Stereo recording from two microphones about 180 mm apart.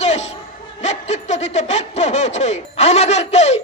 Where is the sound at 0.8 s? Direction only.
40° left (ahead or behind).